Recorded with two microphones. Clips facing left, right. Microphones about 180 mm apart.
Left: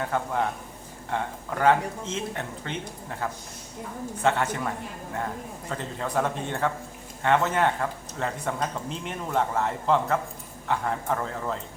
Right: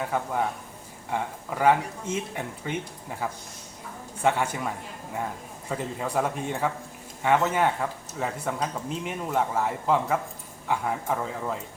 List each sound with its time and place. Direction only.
0.0 s speech: 5° right (ahead or behind)